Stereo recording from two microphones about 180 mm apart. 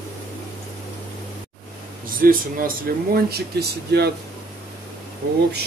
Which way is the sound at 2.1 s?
50° right (ahead or behind).